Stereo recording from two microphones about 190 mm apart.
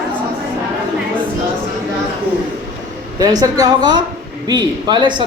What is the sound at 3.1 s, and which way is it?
Speech, 20° right (ahead or behind).